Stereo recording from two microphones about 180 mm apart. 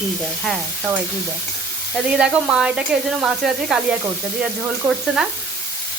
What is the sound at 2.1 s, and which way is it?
Speech, 5° right (ahead or behind).